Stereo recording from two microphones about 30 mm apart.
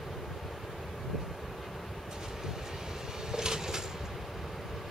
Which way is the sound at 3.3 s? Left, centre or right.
Right.